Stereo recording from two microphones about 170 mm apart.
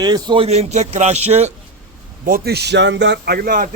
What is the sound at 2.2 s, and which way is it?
Speech, 65° right (ahead or behind).